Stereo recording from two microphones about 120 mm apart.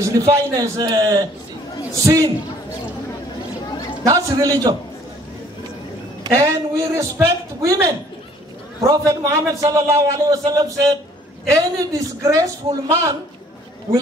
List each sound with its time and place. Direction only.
0.0 s a man's voice: 25° right (ahead or behind)
4.0 s a man's voice: 25° right (ahead or behind)
6.2 s a man's voice: 25° right (ahead or behind)